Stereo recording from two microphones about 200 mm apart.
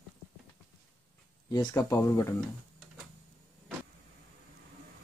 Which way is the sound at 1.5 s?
20° left (ahead or behind).